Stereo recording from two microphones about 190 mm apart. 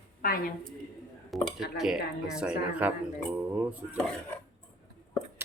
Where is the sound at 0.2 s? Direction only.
50° left (ahead or behind).